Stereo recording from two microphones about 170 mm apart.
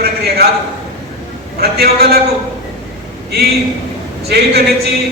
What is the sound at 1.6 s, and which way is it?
Speech, 65° right (ahead or behind).